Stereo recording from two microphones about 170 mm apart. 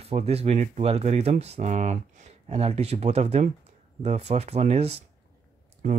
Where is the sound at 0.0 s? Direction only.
40° right (ahead or behind).